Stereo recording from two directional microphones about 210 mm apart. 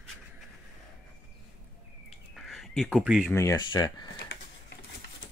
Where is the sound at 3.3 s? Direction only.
15° left (ahead or behind).